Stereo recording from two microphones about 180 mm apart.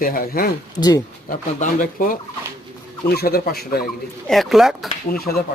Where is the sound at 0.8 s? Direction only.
20° left (ahead or behind).